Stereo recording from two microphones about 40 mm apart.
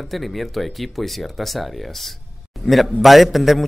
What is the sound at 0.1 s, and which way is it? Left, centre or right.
Speech, centre.